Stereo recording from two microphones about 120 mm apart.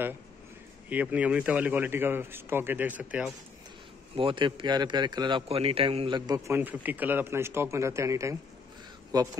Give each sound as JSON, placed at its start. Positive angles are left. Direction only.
{"t": 0.8, "sound": "speech", "side_deg": -10}
{"t": 4.2, "sound": "a man's voice", "side_deg": -45}
{"t": 5.5, "sound": "a man's voice", "side_deg": -50}
{"t": 6.6, "sound": "a man's voice", "side_deg": -15}